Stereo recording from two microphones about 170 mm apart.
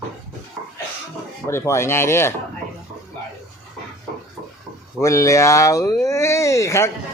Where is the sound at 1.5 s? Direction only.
15° left (ahead or behind).